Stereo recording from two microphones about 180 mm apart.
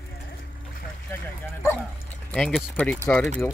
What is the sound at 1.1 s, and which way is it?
Bow-wow, 15° left (ahead or behind).